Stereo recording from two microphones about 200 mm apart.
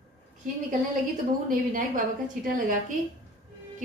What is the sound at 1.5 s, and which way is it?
A woman's voice, 40° right (ahead or behind).